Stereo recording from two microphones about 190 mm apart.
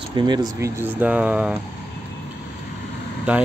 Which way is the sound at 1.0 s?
5° right (ahead or behind).